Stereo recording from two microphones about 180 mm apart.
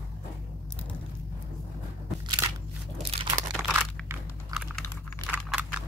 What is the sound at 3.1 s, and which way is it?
Crunch, 35° right (ahead or behind).